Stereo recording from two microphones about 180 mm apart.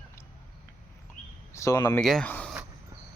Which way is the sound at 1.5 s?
20° left (ahead or behind).